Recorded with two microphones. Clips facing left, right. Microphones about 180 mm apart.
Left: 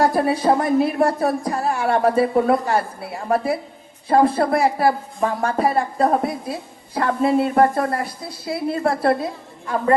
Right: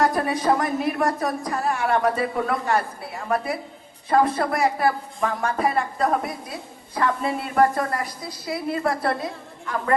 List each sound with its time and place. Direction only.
0.0 s a woman's voice: 30° left (ahead or behind)